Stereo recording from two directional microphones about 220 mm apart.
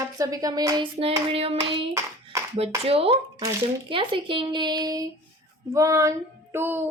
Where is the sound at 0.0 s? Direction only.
15° right (ahead or behind).